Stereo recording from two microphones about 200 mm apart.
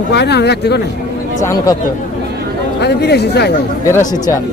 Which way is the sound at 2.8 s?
55° left (ahead or behind).